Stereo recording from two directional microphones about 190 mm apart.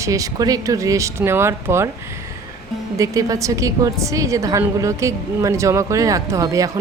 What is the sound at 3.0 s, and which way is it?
A woman's voice, 15° right (ahead or behind).